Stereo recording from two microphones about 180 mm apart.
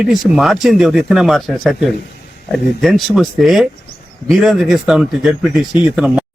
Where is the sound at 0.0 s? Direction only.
Centre (ahead or behind).